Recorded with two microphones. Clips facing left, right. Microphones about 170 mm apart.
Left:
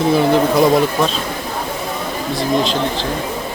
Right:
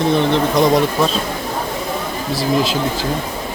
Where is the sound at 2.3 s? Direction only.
5° right (ahead or behind).